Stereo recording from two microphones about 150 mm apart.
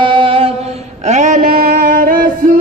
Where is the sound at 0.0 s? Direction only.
35° right (ahead or behind).